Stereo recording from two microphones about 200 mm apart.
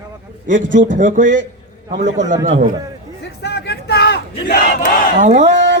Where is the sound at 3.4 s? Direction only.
55° left (ahead or behind).